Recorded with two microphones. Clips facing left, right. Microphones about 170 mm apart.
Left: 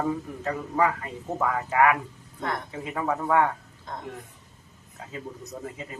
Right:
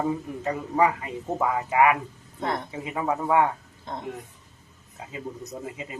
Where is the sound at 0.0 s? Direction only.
15° right (ahead or behind).